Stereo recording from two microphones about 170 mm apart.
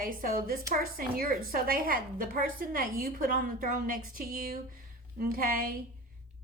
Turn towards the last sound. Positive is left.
turn(degrees=-55)  # may be behind; listen again after turning